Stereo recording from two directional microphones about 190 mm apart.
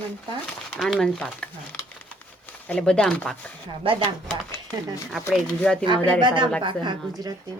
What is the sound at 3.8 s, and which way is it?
Speech, 30° right (ahead or behind).